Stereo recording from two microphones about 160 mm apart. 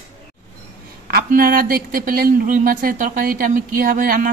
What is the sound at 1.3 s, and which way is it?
Speech, 65° right (ahead or behind).